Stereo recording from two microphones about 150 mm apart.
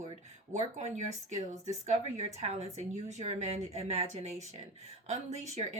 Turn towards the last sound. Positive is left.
turn(degrees=-50)  # may be behind; listen again after turning